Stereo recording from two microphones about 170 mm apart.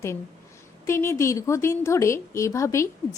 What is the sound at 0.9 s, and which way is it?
A woman's voice, 15° left (ahead or behind).